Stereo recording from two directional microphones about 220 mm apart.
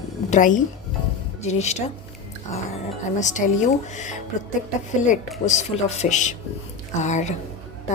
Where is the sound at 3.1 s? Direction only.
35° left (ahead or behind).